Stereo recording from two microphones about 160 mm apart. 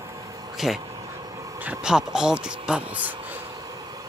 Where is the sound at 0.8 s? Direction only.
20° right (ahead or behind).